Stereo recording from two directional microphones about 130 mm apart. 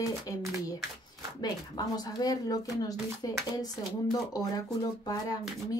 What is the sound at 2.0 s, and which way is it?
Speech, 30° left (ahead or behind).